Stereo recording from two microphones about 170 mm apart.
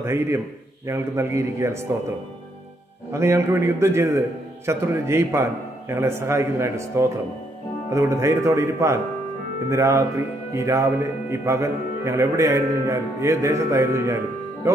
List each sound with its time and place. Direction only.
0.0 s speech: 15° right (ahead or behind)
3.1 s speech: 15° right (ahead or behind)